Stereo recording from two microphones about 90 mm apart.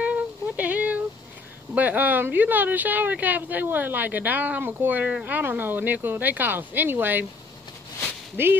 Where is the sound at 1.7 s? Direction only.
20° right (ahead or behind).